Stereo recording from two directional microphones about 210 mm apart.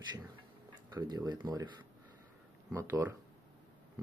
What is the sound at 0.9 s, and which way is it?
Speech, 20° right (ahead or behind).